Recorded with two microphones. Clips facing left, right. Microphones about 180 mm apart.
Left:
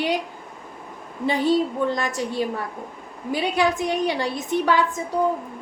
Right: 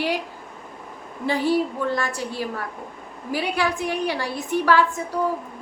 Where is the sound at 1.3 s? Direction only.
20° left (ahead or behind).